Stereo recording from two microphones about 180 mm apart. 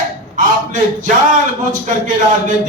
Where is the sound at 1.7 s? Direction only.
45° right (ahead or behind).